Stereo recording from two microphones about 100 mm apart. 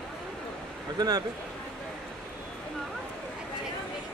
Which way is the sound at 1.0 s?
40° right (ahead or behind).